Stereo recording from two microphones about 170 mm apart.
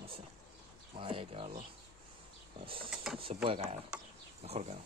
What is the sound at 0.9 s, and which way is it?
Speech, 30° right (ahead or behind).